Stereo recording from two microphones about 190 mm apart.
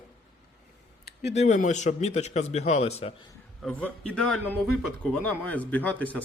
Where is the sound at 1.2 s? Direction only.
35° left (ahead or behind).